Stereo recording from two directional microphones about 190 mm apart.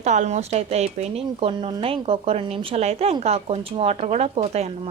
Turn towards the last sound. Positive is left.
turn(degrees=-35)  # may be behind; listen again after turning